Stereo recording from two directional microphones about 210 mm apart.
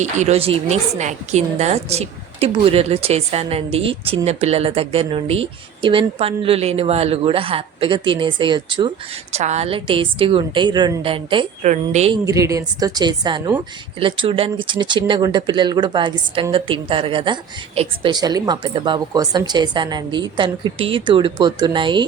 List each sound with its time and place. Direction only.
0.0 s a woman's voice: 35° right (ahead or behind)
9.3 s a woman's voice: 30° right (ahead or behind)
12.1 s a woman's voice: 15° right (ahead or behind)